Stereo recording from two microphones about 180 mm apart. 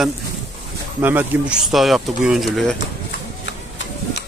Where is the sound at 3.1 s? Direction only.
70° left (ahead or behind).